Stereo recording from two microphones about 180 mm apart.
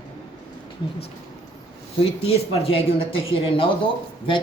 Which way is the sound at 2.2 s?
30° left (ahead or behind).